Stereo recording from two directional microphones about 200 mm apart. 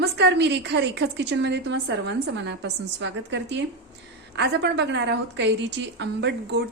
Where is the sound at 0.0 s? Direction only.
55° right (ahead or behind).